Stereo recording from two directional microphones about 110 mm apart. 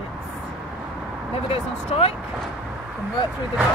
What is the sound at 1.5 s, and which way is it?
Speech, 60° left (ahead or behind).